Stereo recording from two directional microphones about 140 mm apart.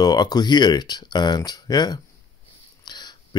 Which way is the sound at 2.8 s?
30° left (ahead or behind).